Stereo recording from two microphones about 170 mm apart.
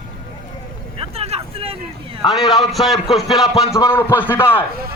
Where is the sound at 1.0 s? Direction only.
35° right (ahead or behind).